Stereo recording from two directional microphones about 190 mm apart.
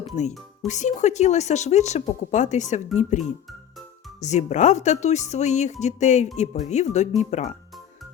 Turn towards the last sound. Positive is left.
turn(degrees=35)  # may be behind; listen again after turning